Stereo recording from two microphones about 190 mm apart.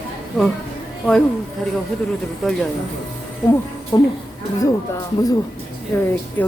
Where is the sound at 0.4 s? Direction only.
Centre (ahead or behind).